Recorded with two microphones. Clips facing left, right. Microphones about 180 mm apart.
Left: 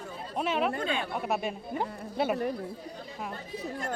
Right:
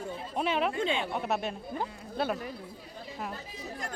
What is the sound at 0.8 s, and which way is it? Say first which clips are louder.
Speech: right 1 dB; 25° right (ahead or behind).